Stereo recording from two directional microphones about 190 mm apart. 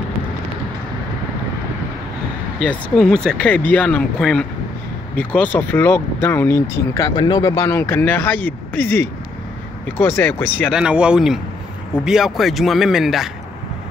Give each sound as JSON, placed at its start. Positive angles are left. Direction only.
{"t": 2.6, "sound": "a man's voice", "side_deg": 5}
{"t": 10.7, "sound": "a man's voice", "side_deg": -5}